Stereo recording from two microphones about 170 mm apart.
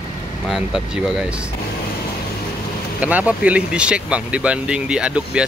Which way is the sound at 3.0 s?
10° right (ahead or behind).